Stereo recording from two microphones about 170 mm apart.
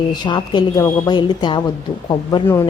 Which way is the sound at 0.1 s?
25° left (ahead or behind).